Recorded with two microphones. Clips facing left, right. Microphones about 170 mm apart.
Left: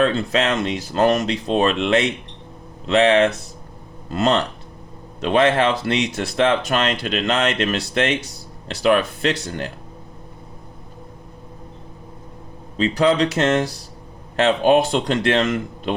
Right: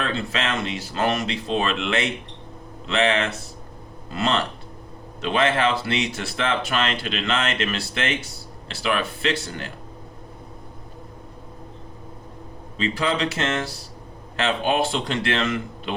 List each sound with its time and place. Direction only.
0.0 s speech: 40° left (ahead or behind)
12.7 s speech: 40° left (ahead or behind)